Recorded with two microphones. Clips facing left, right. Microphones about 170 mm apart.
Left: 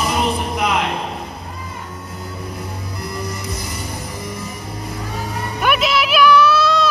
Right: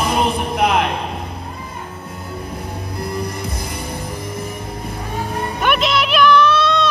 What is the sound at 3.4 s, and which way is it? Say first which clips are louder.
Music: right 1 dB; 55° right (ahead or behind).